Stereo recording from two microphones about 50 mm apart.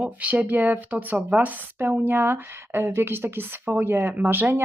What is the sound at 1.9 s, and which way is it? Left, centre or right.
Speech, right.